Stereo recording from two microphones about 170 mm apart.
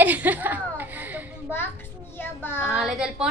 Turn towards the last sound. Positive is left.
turn(degrees=-5)  # may be behind; listen again after turning